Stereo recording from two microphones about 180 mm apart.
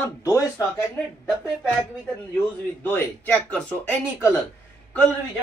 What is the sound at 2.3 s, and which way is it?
Speech, 10° left (ahead or behind).